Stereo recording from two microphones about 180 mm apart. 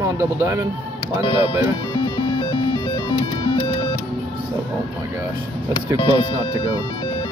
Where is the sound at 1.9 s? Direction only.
25° left (ahead or behind).